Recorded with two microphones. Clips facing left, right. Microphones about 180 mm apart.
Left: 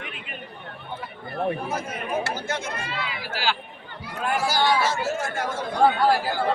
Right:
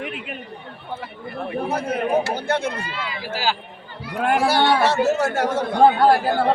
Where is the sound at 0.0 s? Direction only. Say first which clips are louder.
Right 8 dB; 70° right (ahead or behind).